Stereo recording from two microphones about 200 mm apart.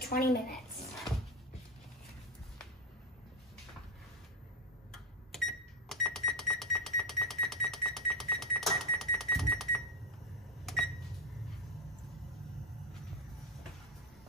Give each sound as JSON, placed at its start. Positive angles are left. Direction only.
{"t": 0.1, "sound": "speech", "side_deg": 50}
{"t": 4.9, "sound": "cash register", "side_deg": 0}
{"t": 10.6, "sound": "microwave oven", "side_deg": 0}